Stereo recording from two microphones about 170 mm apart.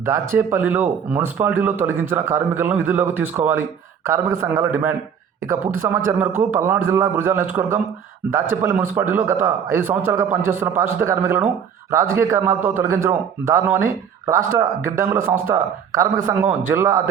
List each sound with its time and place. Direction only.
0.0 s speech: 15° right (ahead or behind)